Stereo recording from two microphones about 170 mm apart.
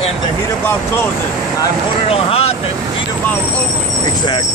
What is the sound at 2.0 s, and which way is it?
Speech, 35° left (ahead or behind).